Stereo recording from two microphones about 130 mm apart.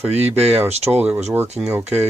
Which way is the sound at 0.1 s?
15° right (ahead or behind).